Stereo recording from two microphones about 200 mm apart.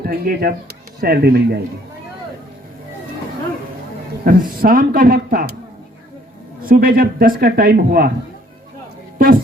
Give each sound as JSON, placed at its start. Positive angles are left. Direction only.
{"t": 0.0, "sound": "a man's voice", "side_deg": -50}
{"t": 4.2, "sound": "a man's voice", "side_deg": -45}
{"t": 6.6, "sound": "a man's voice", "side_deg": -45}
{"t": 9.1, "sound": "a sound", "side_deg": -45}